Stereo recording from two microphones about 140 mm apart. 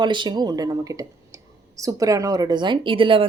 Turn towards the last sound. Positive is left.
turn(degrees=-40)  # may be behind; listen again after turning